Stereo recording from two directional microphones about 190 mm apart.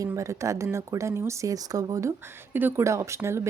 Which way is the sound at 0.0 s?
15° right (ahead or behind).